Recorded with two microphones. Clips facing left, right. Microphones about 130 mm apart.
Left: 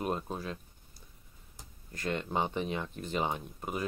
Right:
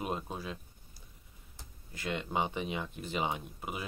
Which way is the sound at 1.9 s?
45° left (ahead or behind).